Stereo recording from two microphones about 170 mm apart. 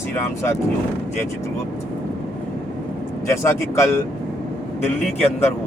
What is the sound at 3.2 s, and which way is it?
Speech, 15° left (ahead or behind).